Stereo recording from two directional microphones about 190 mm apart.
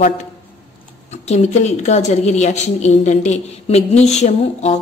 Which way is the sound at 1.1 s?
35° left (ahead or behind).